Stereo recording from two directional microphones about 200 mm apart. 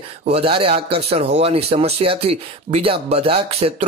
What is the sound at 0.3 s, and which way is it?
Speech, 25° right (ahead or behind).